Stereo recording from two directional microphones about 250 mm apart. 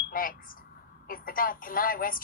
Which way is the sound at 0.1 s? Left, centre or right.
Left.